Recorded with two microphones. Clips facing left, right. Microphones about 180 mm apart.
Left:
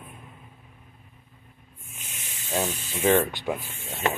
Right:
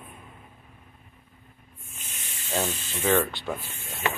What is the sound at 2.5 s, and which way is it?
Speech, 10° left (ahead or behind).